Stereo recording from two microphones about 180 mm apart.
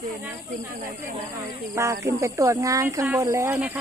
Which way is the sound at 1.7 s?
15° right (ahead or behind).